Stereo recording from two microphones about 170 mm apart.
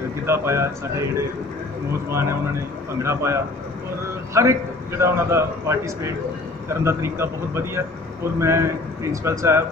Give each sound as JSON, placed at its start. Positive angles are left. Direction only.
{"t": 0.3, "sound": "a man's voice", "side_deg": -15}